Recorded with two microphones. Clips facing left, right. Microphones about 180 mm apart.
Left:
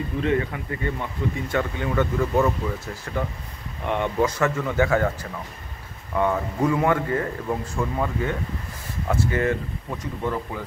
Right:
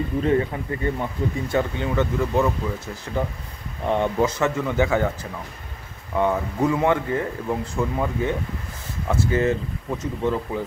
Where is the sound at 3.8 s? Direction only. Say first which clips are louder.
Right 2 dB; 30° right (ahead or behind).